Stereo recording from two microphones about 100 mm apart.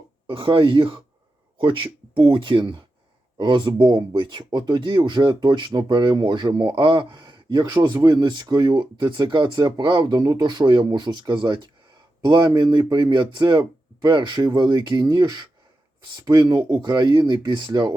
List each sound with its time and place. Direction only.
0.3 s speech: 55° right (ahead or behind)